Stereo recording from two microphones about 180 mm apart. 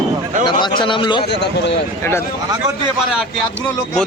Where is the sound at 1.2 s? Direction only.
70° left (ahead or behind).